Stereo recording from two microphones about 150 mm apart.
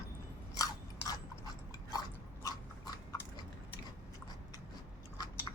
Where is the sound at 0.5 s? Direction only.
25° left (ahead or behind).